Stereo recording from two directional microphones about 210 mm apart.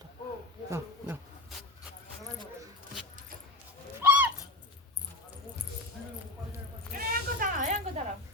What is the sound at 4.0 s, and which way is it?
Owl, 10° right (ahead or behind).